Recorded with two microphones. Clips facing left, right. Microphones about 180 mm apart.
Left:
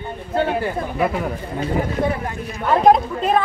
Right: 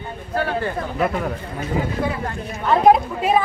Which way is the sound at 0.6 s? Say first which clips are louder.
Left 1 dB; 5° left (ahead or behind).